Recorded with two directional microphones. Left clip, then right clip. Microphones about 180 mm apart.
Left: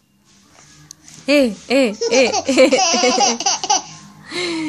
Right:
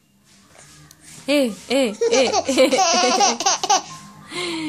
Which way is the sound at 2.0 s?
25° left (ahead or behind).